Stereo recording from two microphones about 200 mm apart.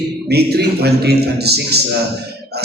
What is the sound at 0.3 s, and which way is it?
A man's voice, 55° right (ahead or behind).